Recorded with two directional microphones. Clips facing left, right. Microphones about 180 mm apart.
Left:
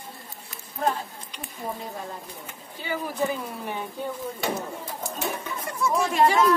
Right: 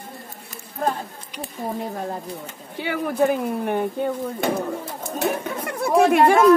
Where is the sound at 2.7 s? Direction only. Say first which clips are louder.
Right 6 dB; 65° right (ahead or behind).